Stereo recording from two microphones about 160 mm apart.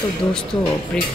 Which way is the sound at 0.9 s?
5° left (ahead or behind).